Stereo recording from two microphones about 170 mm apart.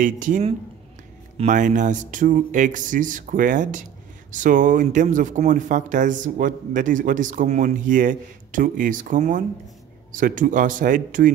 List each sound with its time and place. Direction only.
0.0 s speech: 50° right (ahead or behind)